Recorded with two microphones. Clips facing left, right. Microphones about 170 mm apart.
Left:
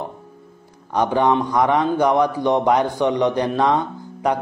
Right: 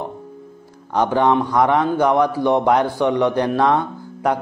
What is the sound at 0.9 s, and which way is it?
Speech, 15° left (ahead or behind).